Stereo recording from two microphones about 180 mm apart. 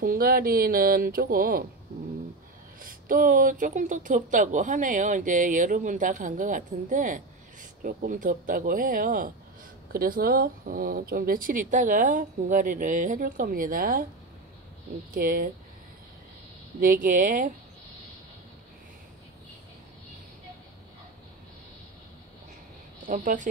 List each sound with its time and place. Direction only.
0.0 s speech: 55° right (ahead or behind)
2.8 s speech: 50° right (ahead or behind)
15.1 s speech: 50° right (ahead or behind)
16.8 s speech: 50° right (ahead or behind)
23.0 s speech: 45° right (ahead or behind)